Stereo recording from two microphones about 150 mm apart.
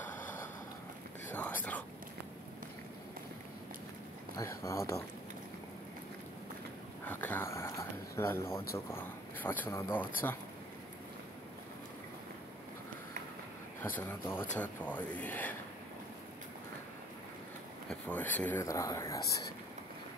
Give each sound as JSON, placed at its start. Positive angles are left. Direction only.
{"t": 1.3, "sound": "speech", "side_deg": 10}
{"t": 4.4, "sound": "speech", "side_deg": 20}
{"t": 7.1, "sound": "speech", "side_deg": 10}
{"t": 13.9, "sound": "speech", "side_deg": 15}
{"t": 17.8, "sound": "speech", "side_deg": 10}